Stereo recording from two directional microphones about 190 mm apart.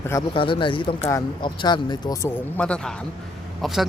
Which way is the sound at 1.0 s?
15° left (ahead or behind).